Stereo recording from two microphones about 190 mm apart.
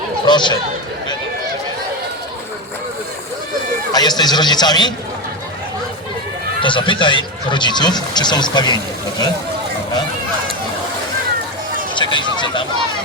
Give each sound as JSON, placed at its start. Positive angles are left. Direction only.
{"t": 0.3, "sound": "speech", "side_deg": 25}
{"t": 3.9, "sound": "speech", "side_deg": 20}
{"t": 6.6, "sound": "speech", "side_deg": 25}
{"t": 11.9, "sound": "speech", "side_deg": 25}